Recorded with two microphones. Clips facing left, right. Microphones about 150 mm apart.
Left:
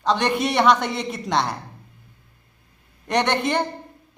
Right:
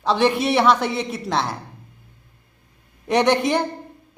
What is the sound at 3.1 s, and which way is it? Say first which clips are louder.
Speech: right 4 dB; 10° right (ahead or behind).